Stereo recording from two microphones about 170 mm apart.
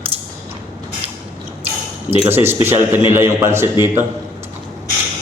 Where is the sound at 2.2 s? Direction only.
10° right (ahead or behind).